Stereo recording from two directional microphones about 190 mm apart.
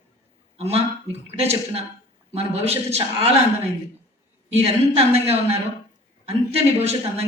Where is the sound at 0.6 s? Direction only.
30° right (ahead or behind).